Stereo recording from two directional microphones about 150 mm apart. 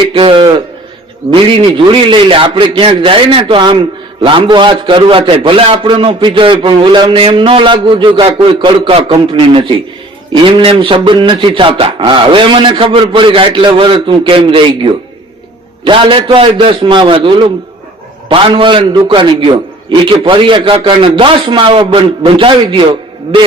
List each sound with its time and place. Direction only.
0.1 s a man's voice: 35° right (ahead or behind)